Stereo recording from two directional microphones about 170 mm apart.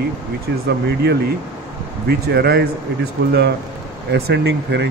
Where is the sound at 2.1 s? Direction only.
70° right (ahead or behind).